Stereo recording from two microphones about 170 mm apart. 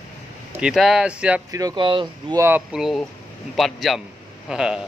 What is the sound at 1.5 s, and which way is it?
Speech, 20° right (ahead or behind).